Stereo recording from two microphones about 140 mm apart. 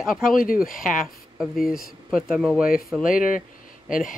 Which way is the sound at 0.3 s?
90° left.